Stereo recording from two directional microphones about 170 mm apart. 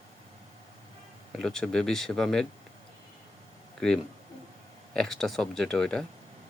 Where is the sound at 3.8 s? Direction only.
5° left (ahead or behind).